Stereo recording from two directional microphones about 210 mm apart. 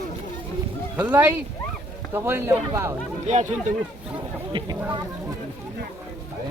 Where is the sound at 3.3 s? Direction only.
35° right (ahead or behind).